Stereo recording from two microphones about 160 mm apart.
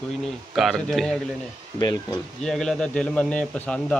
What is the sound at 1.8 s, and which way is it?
Speech, 25° left (ahead or behind).